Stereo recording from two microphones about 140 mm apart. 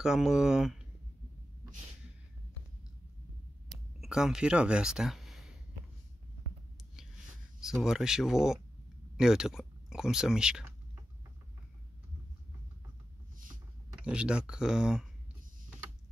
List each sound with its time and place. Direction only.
0.0 s speech: 5° right (ahead or behind)
3.7 s a sound: 5° right (ahead or behind)
7.6 s speech: 5° right (ahead or behind)
14.0 s speech: 5° right (ahead or behind)